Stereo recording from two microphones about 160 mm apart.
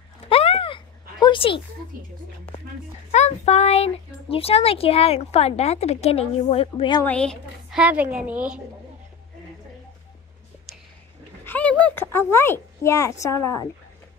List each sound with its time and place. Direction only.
0.3 s a sound: 35° left (ahead or behind)
3.1 s speech: 45° left (ahead or behind)
7.1 s a woman's voice: 5° left (ahead or behind)
7.8 s a woman's voice: 10° right (ahead or behind)
11.4 s speech: 10° left (ahead or behind)